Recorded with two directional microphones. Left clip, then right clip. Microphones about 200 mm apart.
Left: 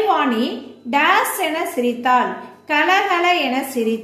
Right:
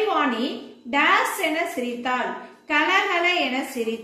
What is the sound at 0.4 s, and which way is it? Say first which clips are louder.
A woman's voice: left 5 dB; 60° left (ahead or behind).